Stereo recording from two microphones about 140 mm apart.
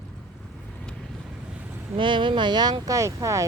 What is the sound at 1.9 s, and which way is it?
Speech, 35° right (ahead or behind).